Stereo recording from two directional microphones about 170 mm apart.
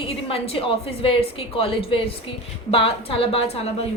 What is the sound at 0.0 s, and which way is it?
A woman's voice, 35° left (ahead or behind).